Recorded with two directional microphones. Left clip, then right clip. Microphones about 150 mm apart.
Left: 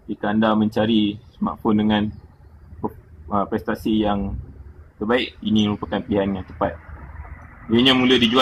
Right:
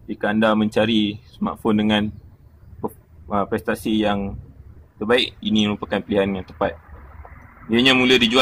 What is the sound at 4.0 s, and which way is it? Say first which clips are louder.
Speech: right 1 dB; 30° right (ahead or behind).